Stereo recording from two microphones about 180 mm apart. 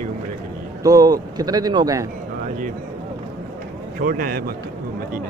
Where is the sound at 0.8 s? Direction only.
20° right (ahead or behind).